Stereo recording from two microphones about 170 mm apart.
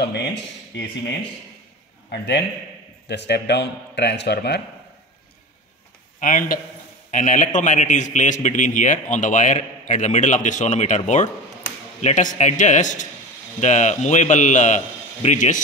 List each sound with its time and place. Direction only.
0.0 s a man's voice: 85° left
2.0 s a man's voice: 85° left
6.1 s a man's voice: 50° left (ahead or behind)